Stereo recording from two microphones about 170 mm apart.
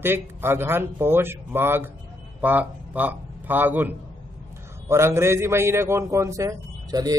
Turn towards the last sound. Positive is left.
turn(degrees=-20)  # may be behind; listen again after turning